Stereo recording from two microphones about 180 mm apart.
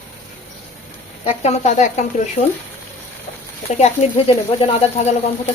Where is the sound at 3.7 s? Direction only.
40° left (ahead or behind).